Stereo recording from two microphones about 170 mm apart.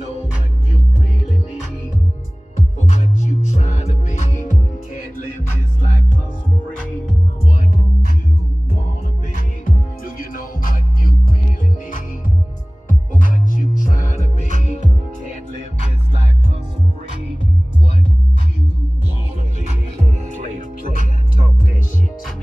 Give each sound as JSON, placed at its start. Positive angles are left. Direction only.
{"t": 2.9, "sound": "music", "side_deg": 45}
{"t": 9.3, "sound": "music", "side_deg": 55}
{"t": 12.8, "sound": "music", "side_deg": 50}
{"t": 20.0, "sound": "music", "side_deg": -45}
{"t": 20.9, "sound": "music", "side_deg": 50}